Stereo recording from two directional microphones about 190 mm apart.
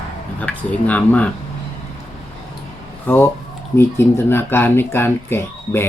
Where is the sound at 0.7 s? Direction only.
10° left (ahead or behind).